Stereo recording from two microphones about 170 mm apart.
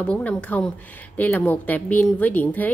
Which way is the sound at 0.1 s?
5° left (ahead or behind).